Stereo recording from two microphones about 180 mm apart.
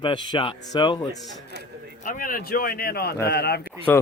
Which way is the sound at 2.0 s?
50° left (ahead or behind).